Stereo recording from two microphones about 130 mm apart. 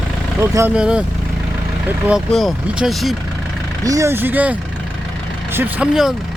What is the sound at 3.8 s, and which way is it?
Speech, 25° right (ahead or behind).